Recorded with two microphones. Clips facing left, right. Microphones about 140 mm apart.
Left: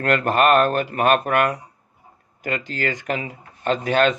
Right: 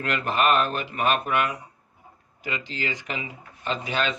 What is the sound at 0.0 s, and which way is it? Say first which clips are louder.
Speech: left 6 dB; 50° left (ahead or behind).